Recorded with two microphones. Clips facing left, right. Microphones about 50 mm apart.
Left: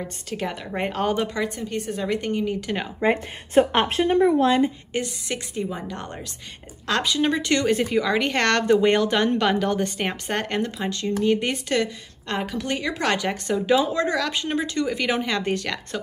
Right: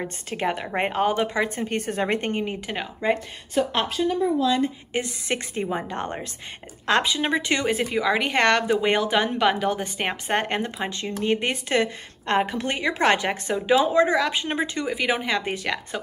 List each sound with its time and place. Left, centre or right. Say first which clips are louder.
0.0 s a woman's voice: right 2 dB; right
1.0 s a woman's voice: even; centre
1.5 s a woman's voice: right 1 dB; right
3.5 s speech: left 5 dB; left
3.9 s a woman's voice: left 6 dB; left
4.9 s a woman's voice: right 1 dB; right
13.6 s a woman's voice: right 3 dB; centre